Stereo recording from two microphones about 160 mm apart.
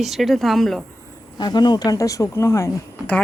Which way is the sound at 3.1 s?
5° left (ahead or behind).